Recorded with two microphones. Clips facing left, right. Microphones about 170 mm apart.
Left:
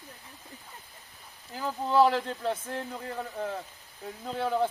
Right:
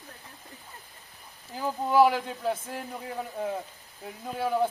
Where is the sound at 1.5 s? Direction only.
15° right (ahead or behind).